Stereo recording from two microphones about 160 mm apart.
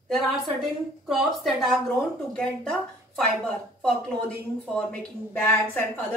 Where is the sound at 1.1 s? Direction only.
Centre (ahead or behind).